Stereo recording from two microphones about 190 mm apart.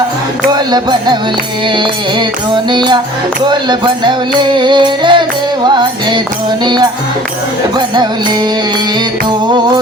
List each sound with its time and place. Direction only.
0.7 s music: 25° right (ahead or behind)
7.8 s music: 20° right (ahead or behind)